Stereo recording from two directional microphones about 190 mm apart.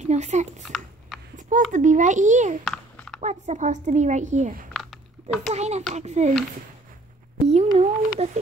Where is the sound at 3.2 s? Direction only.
40° right (ahead or behind).